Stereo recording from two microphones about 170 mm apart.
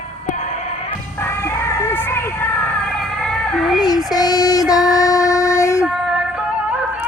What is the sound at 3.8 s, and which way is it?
Child singing, 25° left (ahead or behind).